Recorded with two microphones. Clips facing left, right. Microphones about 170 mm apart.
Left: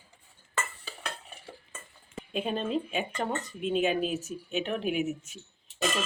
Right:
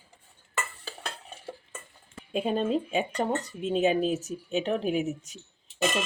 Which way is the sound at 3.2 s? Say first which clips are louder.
Right 3 dB; 25° right (ahead or behind).